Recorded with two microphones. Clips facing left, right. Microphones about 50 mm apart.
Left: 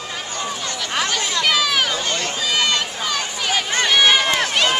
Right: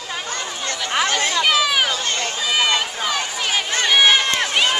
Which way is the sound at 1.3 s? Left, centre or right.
Centre.